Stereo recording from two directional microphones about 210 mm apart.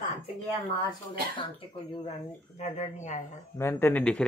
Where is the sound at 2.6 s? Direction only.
35° left (ahead or behind).